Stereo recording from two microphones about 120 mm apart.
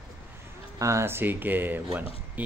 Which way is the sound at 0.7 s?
25° right (ahead or behind).